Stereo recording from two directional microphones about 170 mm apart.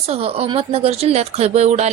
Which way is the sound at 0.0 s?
35° right (ahead or behind).